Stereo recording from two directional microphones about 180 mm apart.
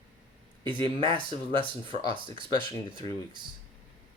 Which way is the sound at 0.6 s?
30° right (ahead or behind).